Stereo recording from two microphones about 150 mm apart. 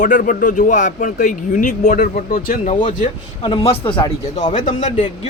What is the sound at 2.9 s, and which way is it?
Speech, 55° left (ahead or behind).